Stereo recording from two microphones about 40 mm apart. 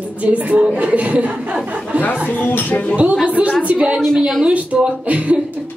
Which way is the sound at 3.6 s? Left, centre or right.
Right.